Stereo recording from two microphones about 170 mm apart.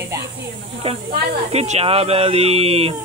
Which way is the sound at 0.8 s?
35° right (ahead or behind).